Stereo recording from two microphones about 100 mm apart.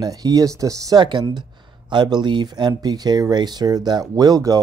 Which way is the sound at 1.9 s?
50° right (ahead or behind).